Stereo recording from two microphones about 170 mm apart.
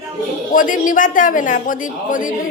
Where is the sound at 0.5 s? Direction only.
50° left (ahead or behind).